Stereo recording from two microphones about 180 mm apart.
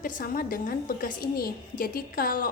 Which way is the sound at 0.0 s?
50° left (ahead or behind).